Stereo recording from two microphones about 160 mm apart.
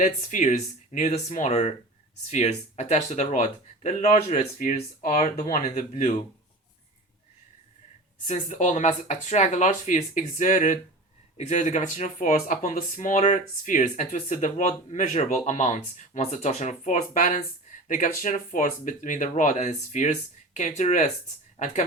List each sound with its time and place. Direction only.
0.0 s speech: 50° left (ahead or behind)
8.3 s speech: 45° left (ahead or behind)